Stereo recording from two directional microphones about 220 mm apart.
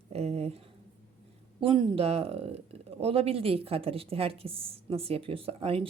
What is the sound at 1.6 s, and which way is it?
Speech, 25° right (ahead or behind).